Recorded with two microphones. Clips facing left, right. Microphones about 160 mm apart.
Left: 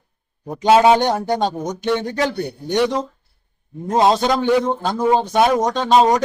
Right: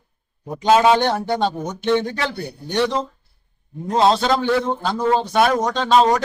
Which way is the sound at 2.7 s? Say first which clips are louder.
Left 2 dB; 15° left (ahead or behind).